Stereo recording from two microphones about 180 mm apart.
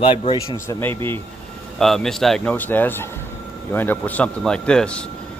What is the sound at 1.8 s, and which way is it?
Speech, centre (ahead or behind).